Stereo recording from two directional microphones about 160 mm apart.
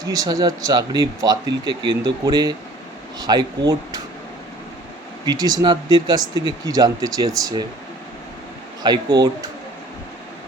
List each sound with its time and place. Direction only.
0.0 s speech: 25° right (ahead or behind)
5.2 s speech: 25° right (ahead or behind)
8.8 s speech: 25° right (ahead or behind)